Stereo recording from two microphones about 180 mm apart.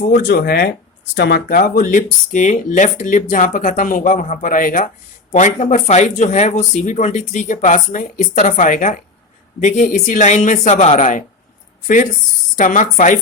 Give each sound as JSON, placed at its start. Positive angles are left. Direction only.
{"t": 0.2, "sound": "speech", "side_deg": 65}
{"t": 1.1, "sound": "speech", "side_deg": 75}
{"t": 1.5, "sound": "speech", "side_deg": 55}
{"t": 12.5, "sound": "speech", "side_deg": 45}